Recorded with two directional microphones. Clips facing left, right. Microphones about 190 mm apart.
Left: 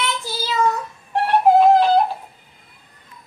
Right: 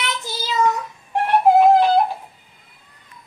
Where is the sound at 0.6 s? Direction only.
15° right (ahead or behind).